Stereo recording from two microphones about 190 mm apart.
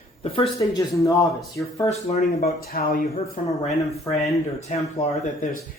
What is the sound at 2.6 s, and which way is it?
Speech, 50° left (ahead or behind).